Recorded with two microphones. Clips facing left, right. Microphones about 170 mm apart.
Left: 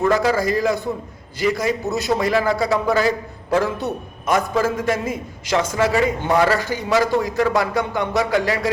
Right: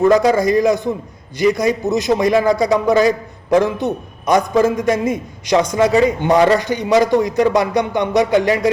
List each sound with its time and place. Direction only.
0.1 s a man's voice: 20° right (ahead or behind)